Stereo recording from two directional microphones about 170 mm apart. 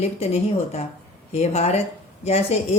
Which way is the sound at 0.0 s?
40° left (ahead or behind).